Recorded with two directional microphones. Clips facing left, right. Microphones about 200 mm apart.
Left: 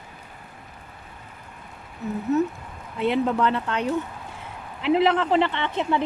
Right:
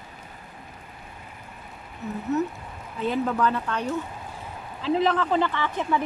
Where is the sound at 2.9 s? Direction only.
85° left.